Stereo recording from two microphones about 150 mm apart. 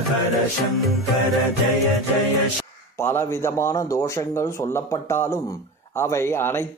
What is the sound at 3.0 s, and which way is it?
A man's voice, 15° left (ahead or behind).